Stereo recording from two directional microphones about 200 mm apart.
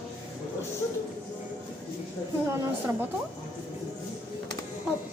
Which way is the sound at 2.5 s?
10° right (ahead or behind).